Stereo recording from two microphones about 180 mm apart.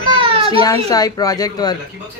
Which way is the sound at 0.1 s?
30° right (ahead or behind).